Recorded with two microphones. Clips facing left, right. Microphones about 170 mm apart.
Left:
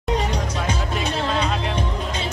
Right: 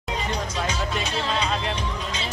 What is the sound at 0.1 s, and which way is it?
Music, 70° left (ahead or behind).